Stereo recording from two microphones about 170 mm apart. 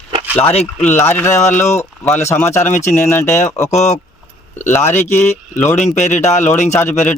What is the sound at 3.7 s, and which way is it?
Speech, 40° left (ahead or behind).